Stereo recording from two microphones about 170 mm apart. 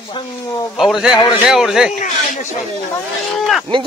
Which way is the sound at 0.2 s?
30° left (ahead or behind).